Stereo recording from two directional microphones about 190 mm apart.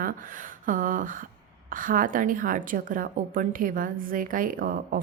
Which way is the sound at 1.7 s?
45° right (ahead or behind).